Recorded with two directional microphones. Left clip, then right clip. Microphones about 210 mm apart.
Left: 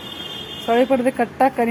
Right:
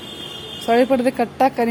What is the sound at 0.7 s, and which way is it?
Speech, 10° right (ahead or behind).